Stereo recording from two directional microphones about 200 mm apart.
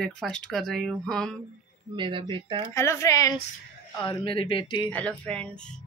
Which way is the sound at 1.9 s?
25° right (ahead or behind).